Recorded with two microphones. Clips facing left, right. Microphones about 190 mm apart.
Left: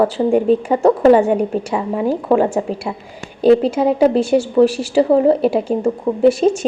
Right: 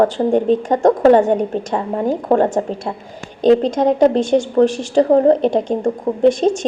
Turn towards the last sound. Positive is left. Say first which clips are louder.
# left 1 dB
turn(degrees=5)  # may be behind; listen again after turning